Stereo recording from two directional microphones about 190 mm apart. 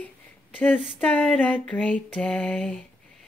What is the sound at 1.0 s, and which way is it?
Female singing, 5° left (ahead or behind).